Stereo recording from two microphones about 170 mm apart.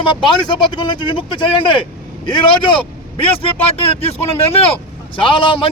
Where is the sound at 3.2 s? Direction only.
35° left (ahead or behind).